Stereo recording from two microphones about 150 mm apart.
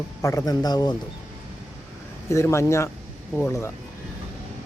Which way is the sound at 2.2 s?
20° left (ahead or behind).